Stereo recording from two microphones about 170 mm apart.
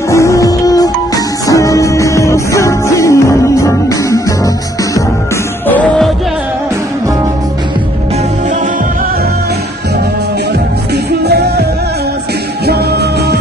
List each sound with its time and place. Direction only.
0.1 s music: 20° left (ahead or behind)
5.7 s music: 10° left (ahead or behind)
11.2 s music: 70° right (ahead or behind)
12.6 s music: 70° right (ahead or behind)